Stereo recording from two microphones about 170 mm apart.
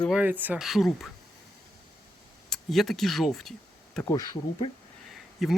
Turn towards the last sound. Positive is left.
turn(degrees=0)  # may be behind; listen again after turning